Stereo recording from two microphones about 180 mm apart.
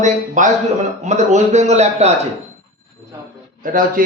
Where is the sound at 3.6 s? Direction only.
50° right (ahead or behind).